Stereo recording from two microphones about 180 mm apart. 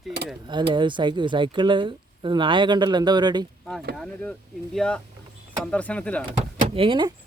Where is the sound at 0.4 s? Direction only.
25° right (ahead or behind).